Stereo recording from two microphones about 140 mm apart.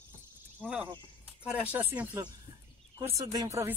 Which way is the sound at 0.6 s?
5° right (ahead or behind).